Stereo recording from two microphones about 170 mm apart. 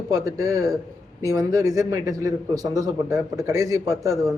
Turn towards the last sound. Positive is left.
turn(degrees=-20)  # may be behind; listen again after turning